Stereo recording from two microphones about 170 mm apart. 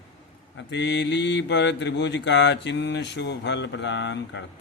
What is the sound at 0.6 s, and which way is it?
Mantra, 90° left.